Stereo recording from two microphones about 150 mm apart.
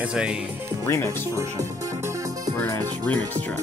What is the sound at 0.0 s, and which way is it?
Speech, 5° right (ahead or behind).